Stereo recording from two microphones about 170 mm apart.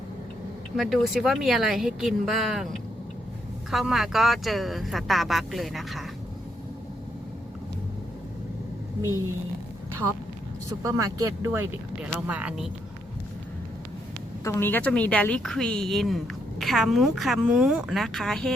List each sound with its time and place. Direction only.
0.8 s a woman's voice: centre (ahead or behind)
3.7 s a woman's voice: centre (ahead or behind)
9.9 s speech: 15° right (ahead or behind)
14.4 s a woman's voice: 15° left (ahead or behind)